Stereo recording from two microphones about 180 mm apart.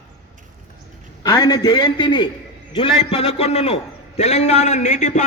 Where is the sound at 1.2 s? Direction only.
20° left (ahead or behind).